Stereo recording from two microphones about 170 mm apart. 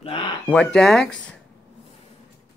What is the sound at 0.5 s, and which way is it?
Speech, 5° left (ahead or behind).